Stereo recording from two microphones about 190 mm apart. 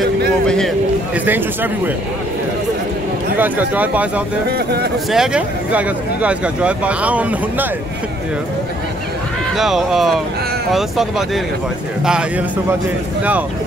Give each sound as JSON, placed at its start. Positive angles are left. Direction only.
{"t": 1.1, "sound": "speech", "side_deg": -10}
{"t": 3.3, "sound": "speech", "side_deg": -10}
{"t": 4.5, "sound": "speech", "side_deg": -55}
{"t": 5.1, "sound": "speech", "side_deg": -5}
{"t": 9.6, "sound": "speech", "side_deg": 0}